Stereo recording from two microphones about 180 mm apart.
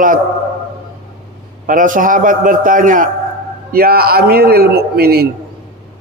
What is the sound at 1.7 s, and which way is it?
A man's voice, 45° right (ahead or behind).